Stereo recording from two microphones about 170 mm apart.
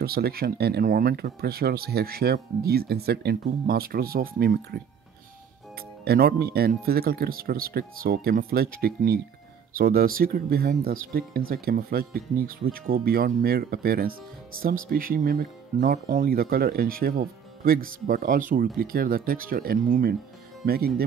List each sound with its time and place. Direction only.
0.0 s speech: 65° right (ahead or behind)
6.0 s speech: 65° right (ahead or behind)